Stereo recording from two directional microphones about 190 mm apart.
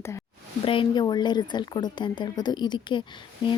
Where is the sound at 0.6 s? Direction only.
25° left (ahead or behind).